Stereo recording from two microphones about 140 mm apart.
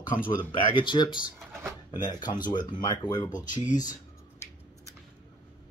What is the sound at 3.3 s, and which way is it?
Speech, 65° left (ahead or behind).